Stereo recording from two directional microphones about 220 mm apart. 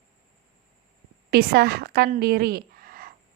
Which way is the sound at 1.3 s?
45° right (ahead or behind).